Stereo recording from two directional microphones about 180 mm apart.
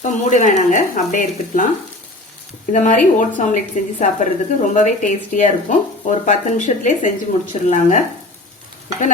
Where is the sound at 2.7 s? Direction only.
45° left (ahead or behind).